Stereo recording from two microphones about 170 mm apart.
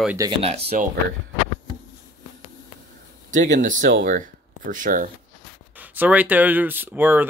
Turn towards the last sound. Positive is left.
turn(degrees=-10)  # may be behind; listen again after turning